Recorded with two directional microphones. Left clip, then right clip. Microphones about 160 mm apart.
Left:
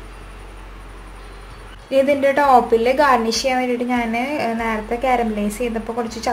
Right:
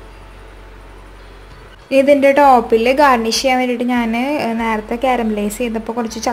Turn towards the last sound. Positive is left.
turn(degrees=-45)  # may be behind; listen again after turning